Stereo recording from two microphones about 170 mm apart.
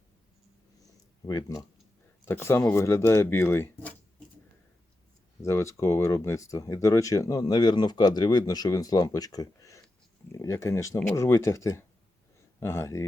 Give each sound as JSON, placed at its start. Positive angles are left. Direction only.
{"t": 1.3, "sound": "speech", "side_deg": 20}
{"t": 5.4, "sound": "speech", "side_deg": 15}